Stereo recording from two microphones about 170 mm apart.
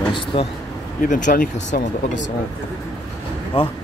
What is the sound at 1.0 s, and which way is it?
Speech, 50° left (ahead or behind).